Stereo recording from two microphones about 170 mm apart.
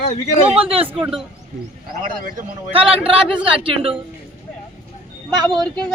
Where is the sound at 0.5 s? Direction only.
35° right (ahead or behind).